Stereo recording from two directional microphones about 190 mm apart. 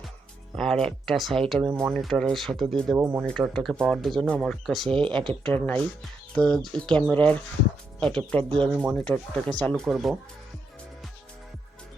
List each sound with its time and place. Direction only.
0.5 s speech: centre (ahead or behind)
3.0 s speech: 15° right (ahead or behind)
3.2 s speech: centre (ahead or behind)
4.9 s speech: 25° right (ahead or behind)
5.5 s speech: 10° left (ahead or behind)